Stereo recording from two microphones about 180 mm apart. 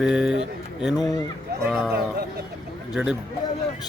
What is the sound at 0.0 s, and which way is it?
Speech, 5° right (ahead or behind).